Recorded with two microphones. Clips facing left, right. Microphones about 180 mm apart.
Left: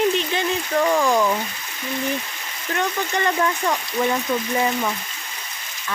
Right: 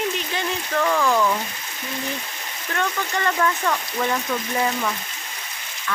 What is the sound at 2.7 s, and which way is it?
Speech, 20° left (ahead or behind).